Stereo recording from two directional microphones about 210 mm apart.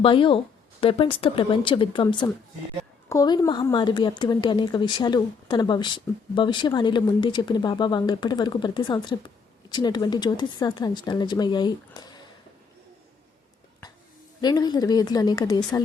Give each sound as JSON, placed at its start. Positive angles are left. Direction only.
{"t": 0.0, "sound": "a woman's voice", "side_deg": 25}
{"t": 14.4, "sound": "a woman's voice", "side_deg": 20}